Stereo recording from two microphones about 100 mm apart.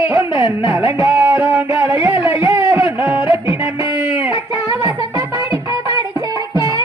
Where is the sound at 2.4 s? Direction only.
30° right (ahead or behind).